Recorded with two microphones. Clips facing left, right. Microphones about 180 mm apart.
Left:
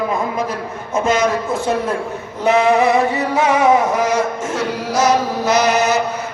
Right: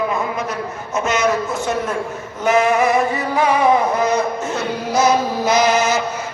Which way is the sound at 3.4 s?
80° left.